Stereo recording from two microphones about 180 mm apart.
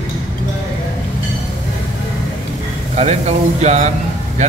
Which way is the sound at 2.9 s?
40° right (ahead or behind).